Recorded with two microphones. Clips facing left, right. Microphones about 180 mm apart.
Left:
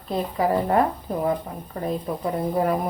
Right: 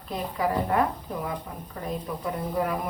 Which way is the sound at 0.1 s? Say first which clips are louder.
Left 5 dB; 35° left (ahead or behind).